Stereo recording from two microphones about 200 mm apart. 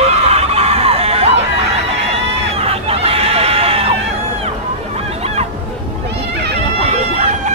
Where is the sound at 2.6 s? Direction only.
30° right (ahead or behind).